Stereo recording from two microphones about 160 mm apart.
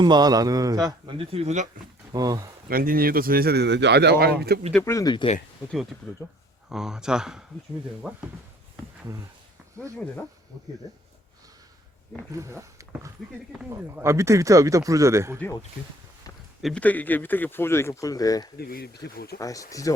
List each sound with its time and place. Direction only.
0.0 s speech: 25° right (ahead or behind); by 1.6 s 40° right (ahead or behind)
2.1 s speech: 20° right (ahead or behind)
2.6 s speech: 65° right (ahead or behind); by 4.4 s 90° right
4.7 s speech: 15° left (ahead or behind)
6.7 s speech: 5° right (ahead or behind)
12.4 s speech: 20° right (ahead or behind)
16.6 s speech: 10° left (ahead or behind)
18.5 s speech: 75° left (ahead or behind)
19.0 s speech: 85° left
19.4 s speech: 20° left (ahead or behind)